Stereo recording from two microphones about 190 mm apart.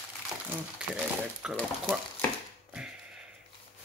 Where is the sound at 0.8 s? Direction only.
5° right (ahead or behind).